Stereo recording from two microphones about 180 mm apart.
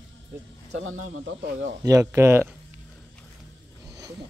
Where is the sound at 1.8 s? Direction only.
20° right (ahead or behind).